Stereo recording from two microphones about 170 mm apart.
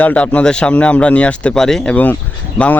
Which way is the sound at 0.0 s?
10° left (ahead or behind).